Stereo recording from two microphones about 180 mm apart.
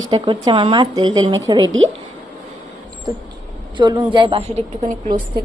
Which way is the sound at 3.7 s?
25° right (ahead or behind).